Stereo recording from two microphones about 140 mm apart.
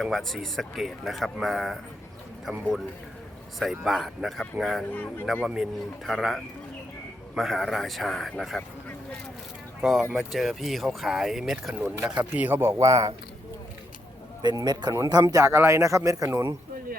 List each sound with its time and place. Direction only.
0.0 s speech: centre (ahead or behind)
9.8 s speech: 5° right (ahead or behind); by 13.1 s 20° right (ahead or behind)
14.4 s speech: 30° right (ahead or behind)